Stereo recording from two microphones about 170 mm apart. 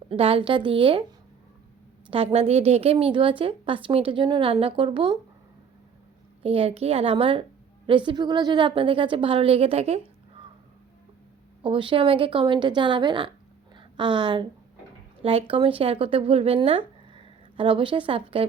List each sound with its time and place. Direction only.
0.1 s a woman's voice: 35° right (ahead or behind)
2.0 s a woman's voice: 35° right (ahead or behind)
6.4 s a woman's voice: 35° right (ahead or behind)
11.6 s a woman's voice: 30° right (ahead or behind)